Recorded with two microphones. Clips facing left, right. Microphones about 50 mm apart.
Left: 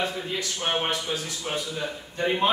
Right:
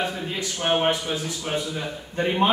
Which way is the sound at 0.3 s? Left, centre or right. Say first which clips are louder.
Right 4 dB; right.